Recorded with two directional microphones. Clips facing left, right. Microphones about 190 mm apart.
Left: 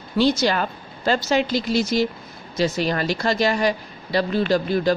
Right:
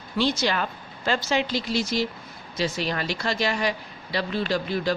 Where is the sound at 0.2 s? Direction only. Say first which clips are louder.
Left 5 dB; 40° left (ahead or behind).